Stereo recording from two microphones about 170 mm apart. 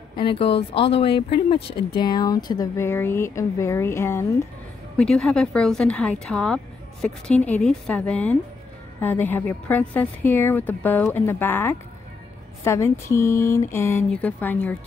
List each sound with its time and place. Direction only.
0.2 s speech: 30° left (ahead or behind); by 4.3 s 15° left (ahead or behind)
4.9 s a woman's voice: 5° left (ahead or behind)